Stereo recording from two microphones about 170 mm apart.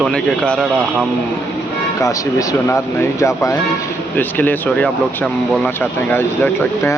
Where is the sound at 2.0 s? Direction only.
15° left (ahead or behind).